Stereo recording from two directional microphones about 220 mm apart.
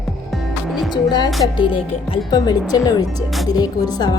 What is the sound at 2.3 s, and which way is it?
Speech, 20° left (ahead or behind).